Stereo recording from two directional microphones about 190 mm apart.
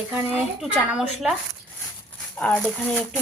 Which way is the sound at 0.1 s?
10° right (ahead or behind).